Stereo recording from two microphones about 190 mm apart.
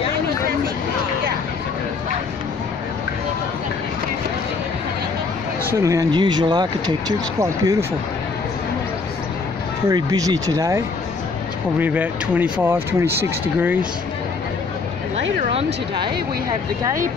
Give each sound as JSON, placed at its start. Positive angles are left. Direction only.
{"t": 5.8, "sound": "speech", "side_deg": -15}
{"t": 9.8, "sound": "speech", "side_deg": -20}
{"t": 11.8, "sound": "speech", "side_deg": -10}